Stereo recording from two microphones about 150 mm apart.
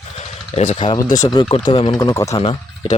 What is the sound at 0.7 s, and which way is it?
Speech, 35° left (ahead or behind).